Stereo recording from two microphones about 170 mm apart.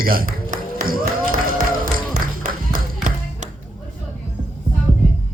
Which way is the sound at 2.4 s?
55° right (ahead or behind).